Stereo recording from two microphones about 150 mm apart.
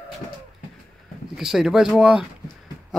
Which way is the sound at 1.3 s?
5° right (ahead or behind).